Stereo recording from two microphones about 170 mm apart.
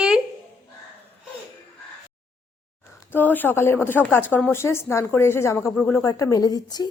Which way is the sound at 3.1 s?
10° left (ahead or behind).